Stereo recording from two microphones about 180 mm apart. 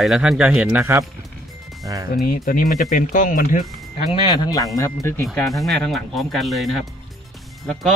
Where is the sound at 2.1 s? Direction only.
50° left (ahead or behind).